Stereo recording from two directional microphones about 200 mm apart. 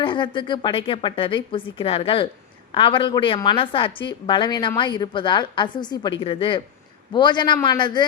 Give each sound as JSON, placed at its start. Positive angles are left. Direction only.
{"t": 0.0, "sound": "a woman's voice", "side_deg": 25}